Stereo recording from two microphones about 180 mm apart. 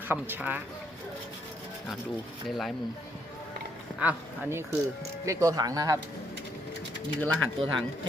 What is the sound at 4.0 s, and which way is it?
Speech, 10° right (ahead or behind).